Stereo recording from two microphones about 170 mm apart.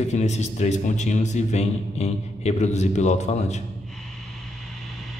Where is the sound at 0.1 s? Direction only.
40° left (ahead or behind).